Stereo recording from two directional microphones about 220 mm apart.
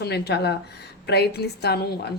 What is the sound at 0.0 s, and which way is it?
A woman's voice, 50° left (ahead or behind).